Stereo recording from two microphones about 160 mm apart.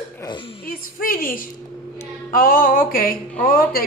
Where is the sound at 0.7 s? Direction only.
65° left (ahead or behind).